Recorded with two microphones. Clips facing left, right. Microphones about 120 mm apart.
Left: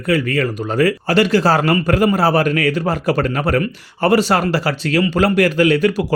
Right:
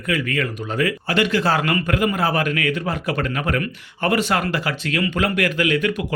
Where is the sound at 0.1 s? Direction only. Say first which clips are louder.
Left 6 dB; 35° left (ahead or behind).